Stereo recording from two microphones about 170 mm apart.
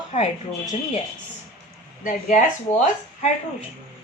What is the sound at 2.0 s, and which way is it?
Speech, 45° left (ahead or behind).